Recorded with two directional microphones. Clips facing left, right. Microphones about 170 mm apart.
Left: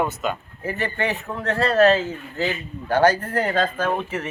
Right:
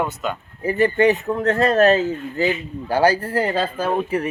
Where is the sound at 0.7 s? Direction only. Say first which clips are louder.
Right 10 dB; 35° right (ahead or behind).